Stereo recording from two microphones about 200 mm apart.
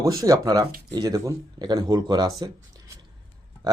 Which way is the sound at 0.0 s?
15° right (ahead or behind).